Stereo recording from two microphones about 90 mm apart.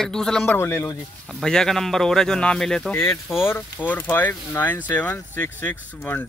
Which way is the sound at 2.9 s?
25° left (ahead or behind).